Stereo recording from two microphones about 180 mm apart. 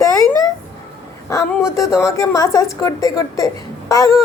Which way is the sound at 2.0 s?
15° left (ahead or behind).